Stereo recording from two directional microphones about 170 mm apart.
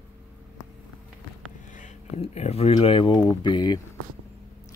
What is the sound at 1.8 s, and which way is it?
Speech, 40° left (ahead or behind).